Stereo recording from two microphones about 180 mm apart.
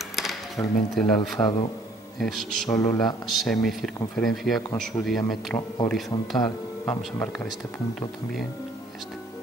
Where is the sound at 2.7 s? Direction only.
15° left (ahead or behind).